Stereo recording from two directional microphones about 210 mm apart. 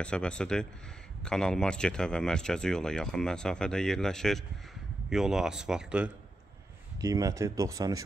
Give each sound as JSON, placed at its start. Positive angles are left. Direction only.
{"t": 0.0, "sound": "speech", "side_deg": 5}
{"t": 7.0, "sound": "speech", "side_deg": -15}